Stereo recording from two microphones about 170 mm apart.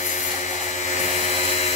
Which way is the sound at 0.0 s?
40° left (ahead or behind).